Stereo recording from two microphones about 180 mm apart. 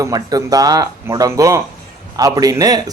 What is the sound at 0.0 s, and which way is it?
Speech, 20° right (ahead or behind).